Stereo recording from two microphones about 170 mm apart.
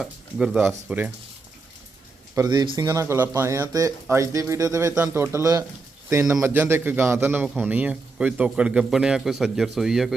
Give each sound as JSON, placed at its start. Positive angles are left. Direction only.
{"t": 0.0, "sound": "a man's voice", "side_deg": -5}
{"t": 2.3, "sound": "a man's voice", "side_deg": -20}